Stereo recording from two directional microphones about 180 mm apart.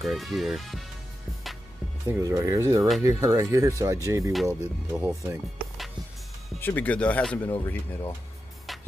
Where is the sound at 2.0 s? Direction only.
15° right (ahead or behind).